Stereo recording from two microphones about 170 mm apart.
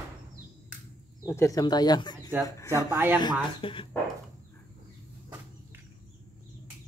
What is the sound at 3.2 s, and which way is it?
Speech, 25° left (ahead or behind).